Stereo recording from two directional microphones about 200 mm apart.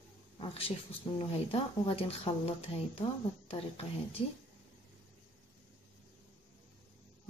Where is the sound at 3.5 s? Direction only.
30° left (ahead or behind).